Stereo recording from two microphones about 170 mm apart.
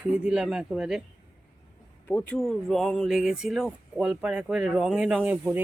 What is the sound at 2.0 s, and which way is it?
Speech, 10° left (ahead or behind).